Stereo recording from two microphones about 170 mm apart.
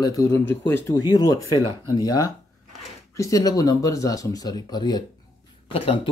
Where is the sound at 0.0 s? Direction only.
20° left (ahead or behind).